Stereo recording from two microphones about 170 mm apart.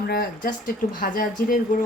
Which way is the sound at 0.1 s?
60° left (ahead or behind).